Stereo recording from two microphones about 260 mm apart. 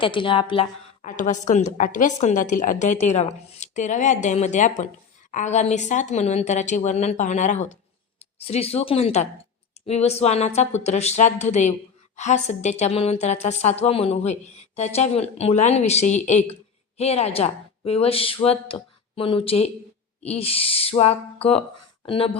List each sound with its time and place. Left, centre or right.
0.0 s a woman's voice: centre